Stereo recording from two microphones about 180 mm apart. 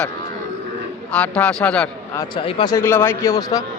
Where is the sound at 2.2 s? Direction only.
30° left (ahead or behind).